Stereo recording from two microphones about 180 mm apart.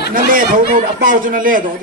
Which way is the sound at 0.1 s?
50° right (ahead or behind).